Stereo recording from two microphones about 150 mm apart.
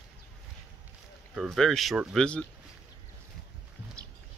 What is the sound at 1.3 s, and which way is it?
Speech, centre (ahead or behind).